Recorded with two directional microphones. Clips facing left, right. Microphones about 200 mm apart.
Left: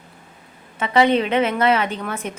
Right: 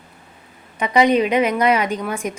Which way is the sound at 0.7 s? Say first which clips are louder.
Right 1 dB; 15° right (ahead or behind).